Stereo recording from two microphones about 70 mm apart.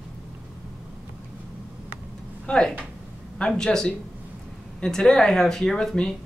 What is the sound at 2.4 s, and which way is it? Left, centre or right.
Speech, centre.